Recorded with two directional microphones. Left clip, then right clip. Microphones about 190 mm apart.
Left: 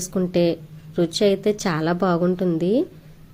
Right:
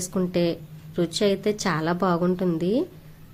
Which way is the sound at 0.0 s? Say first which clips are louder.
Left 4 dB; 5° left (ahead or behind).